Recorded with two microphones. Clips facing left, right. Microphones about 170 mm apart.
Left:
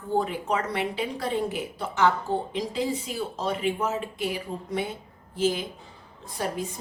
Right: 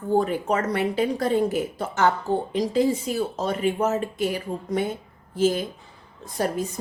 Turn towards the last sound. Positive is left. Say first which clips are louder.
# right 5 dB
turn(degrees=-45)  # may be behind; listen again after turning